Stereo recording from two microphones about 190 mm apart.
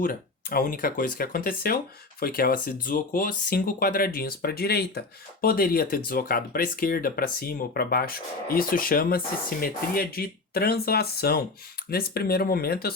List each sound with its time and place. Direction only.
0.0 s speech: 50° left (ahead or behind)